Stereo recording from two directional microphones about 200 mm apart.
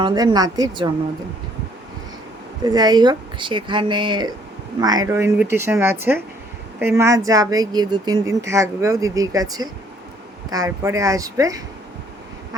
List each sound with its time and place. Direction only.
0.0 s speech: 20° right (ahead or behind)
2.6 s a woman's voice: 20° right (ahead or behind)